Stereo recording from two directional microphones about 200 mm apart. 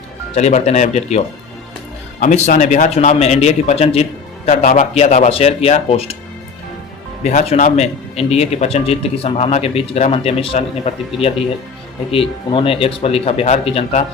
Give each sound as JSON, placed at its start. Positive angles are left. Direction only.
{"t": 0.3, "sound": "speech", "side_deg": 35}
{"t": 2.2, "sound": "speech", "side_deg": 40}
{"t": 7.3, "sound": "speech", "side_deg": 35}